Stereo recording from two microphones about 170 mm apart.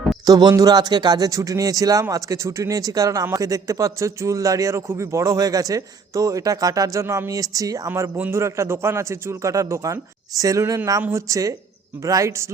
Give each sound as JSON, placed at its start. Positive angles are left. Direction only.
{"t": 0.3, "sound": "a man's voice", "side_deg": -20}